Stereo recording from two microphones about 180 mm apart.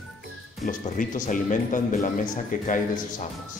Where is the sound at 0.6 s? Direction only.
45° left (ahead or behind).